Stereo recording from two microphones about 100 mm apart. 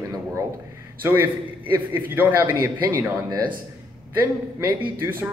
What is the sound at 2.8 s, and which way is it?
Speech, 35° right (ahead or behind).